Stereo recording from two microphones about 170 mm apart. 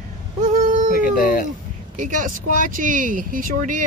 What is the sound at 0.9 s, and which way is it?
Speech, 60° left (ahead or behind).